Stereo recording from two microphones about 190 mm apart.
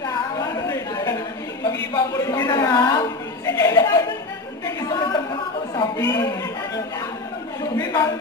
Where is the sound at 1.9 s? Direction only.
15° left (ahead or behind).